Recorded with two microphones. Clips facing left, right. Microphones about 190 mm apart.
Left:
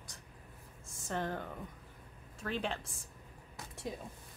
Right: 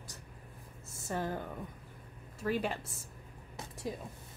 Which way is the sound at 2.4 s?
10° right (ahead or behind).